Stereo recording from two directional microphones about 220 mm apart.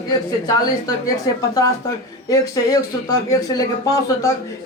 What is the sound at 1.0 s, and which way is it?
Speech, 15° left (ahead or behind).